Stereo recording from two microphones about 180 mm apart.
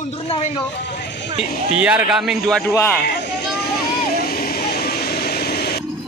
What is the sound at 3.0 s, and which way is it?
Vehicle, 60° left (ahead or behind).